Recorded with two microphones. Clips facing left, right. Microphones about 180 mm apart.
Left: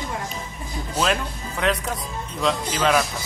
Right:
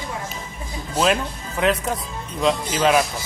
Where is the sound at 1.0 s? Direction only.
Centre (ahead or behind).